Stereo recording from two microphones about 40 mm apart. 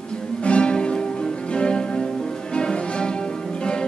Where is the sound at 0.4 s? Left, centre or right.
Left.